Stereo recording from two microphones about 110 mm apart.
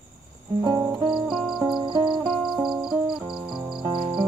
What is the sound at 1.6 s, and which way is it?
Music, 45° right (ahead or behind).